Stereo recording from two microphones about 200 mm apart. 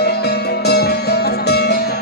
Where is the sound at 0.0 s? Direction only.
55° left (ahead or behind).